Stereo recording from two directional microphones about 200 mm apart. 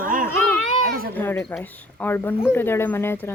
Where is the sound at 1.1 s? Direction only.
10° left (ahead or behind).